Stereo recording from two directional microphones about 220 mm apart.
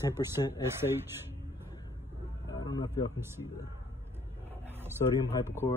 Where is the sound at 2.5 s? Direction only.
20° left (ahead or behind).